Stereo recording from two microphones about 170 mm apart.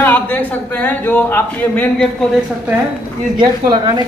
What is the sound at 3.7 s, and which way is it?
Speech, 25° right (ahead or behind).